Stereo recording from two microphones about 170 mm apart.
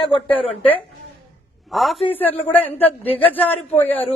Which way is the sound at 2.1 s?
10° left (ahead or behind).